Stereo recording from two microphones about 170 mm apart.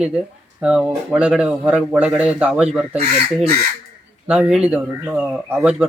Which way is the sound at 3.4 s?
70° right (ahead or behind).